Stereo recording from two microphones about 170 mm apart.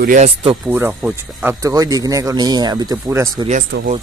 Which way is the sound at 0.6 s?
10° right (ahead or behind).